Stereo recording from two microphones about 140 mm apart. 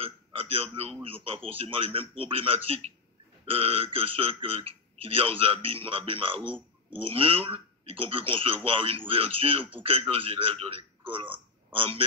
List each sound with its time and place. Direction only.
0.0 s a man's voice: 40° right (ahead or behind)